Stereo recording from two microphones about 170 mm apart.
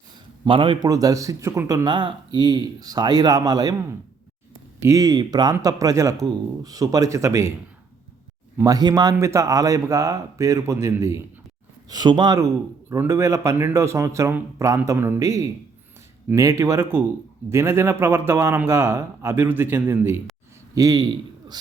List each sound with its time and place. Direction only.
0.4 s a man's voice: 30° right (ahead or behind)
4.8 s a man's voice: 20° right (ahead or behind)
8.5 s a man's voice: 20° right (ahead or behind)